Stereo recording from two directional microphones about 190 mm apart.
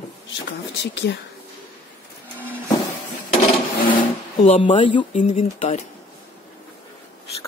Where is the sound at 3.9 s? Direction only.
40° left (ahead or behind).